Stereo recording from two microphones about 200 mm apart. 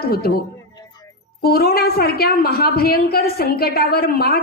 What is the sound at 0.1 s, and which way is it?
A woman's voice, 50° left (ahead or behind).